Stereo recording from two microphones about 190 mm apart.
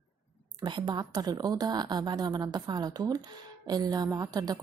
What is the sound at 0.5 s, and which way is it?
A woman's voice, 25° right (ahead or behind).